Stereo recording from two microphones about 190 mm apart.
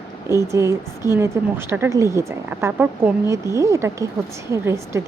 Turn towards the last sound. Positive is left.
turn(degrees=-15)  # may be behind; listen again after turning